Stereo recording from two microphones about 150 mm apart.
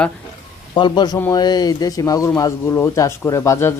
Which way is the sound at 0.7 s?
30° left (ahead or behind).